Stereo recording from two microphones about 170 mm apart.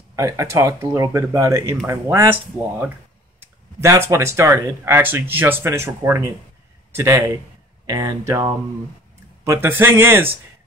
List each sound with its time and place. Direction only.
0.1 s speech: 15° right (ahead or behind)
3.8 s speech: 15° right (ahead or behind)